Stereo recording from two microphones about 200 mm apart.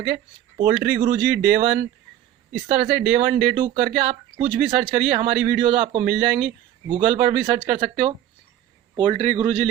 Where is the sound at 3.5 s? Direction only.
30° right (ahead or behind).